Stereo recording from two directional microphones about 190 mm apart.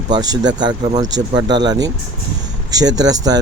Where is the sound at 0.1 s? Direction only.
20° right (ahead or behind).